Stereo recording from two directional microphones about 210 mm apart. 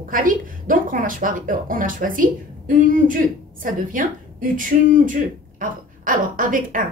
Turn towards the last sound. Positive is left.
turn(degrees=-40)  # may be behind; listen again after turning